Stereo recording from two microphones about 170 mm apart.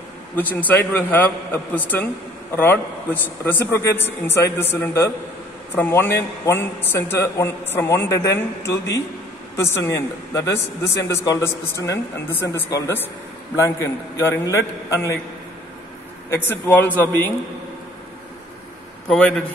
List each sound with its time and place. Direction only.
0.4 s a woman's voice: 10° left (ahead or behind)
16.3 s a woman's voice: 15° left (ahead or behind)
19.0 s a man's voice: 5° left (ahead or behind)